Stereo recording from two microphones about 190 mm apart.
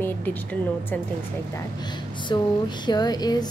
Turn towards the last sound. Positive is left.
turn(degrees=20)  # may be behind; listen again after turning